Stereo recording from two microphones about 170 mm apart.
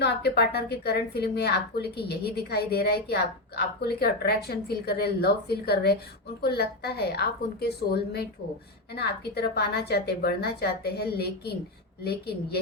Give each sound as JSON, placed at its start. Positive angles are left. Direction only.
{"t": 0.0, "sound": "a woman's voice", "side_deg": 75}